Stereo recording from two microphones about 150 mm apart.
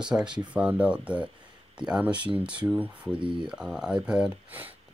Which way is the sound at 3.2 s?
35° right (ahead or behind).